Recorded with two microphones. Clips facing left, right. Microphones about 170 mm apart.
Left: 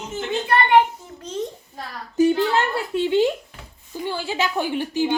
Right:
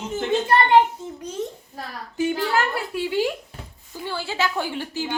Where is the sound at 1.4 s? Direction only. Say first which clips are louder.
Left 1 dB; 5° right (ahead or behind).